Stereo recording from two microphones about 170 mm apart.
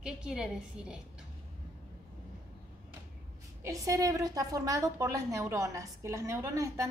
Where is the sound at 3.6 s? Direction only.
20° right (ahead or behind).